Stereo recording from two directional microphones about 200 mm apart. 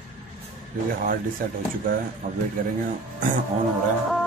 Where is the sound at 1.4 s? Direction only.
45° right (ahead or behind).